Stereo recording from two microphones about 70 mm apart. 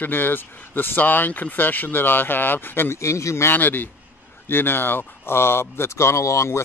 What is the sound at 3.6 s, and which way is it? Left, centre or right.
Speech, left.